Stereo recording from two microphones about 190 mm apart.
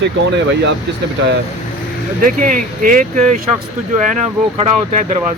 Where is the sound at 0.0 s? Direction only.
65° right (ahead or behind).